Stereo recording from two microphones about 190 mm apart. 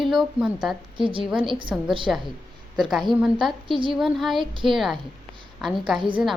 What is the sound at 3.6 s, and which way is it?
Speech, 25° right (ahead or behind).